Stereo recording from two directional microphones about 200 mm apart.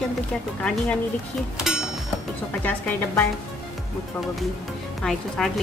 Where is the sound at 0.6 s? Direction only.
5° left (ahead or behind).